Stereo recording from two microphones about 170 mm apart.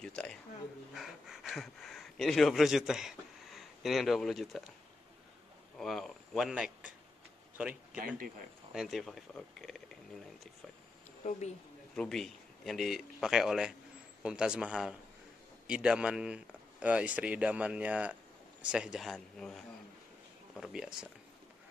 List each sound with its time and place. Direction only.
0.0 s speech: 5° left (ahead or behind)
5.8 s speech: 5° left (ahead or behind)
7.5 s a sound: 10° right (ahead or behind)
8.7 s speech: centre (ahead or behind)
11.2 s speech: 45° left (ahead or behind)
11.9 s speech: 5° left (ahead or behind)